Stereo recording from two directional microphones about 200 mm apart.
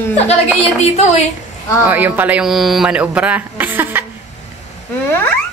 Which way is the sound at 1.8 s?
10° right (ahead or behind).